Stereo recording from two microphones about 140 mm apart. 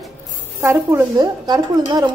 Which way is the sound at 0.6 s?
20° right (ahead or behind).